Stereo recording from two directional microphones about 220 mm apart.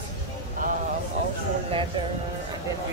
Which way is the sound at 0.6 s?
35° right (ahead or behind).